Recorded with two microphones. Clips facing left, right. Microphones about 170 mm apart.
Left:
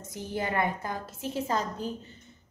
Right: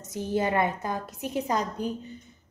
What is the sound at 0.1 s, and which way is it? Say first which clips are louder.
A woman's voice: right 5 dB; 20° right (ahead or behind).